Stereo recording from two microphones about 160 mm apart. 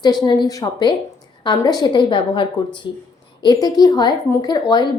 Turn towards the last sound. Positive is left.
turn(degrees=25)  # may be behind; listen again after turning